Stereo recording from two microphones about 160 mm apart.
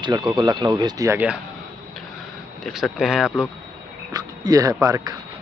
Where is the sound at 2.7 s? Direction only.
Centre (ahead or behind).